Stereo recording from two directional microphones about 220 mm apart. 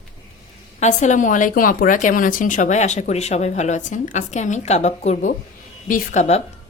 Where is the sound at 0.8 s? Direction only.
35° left (ahead or behind).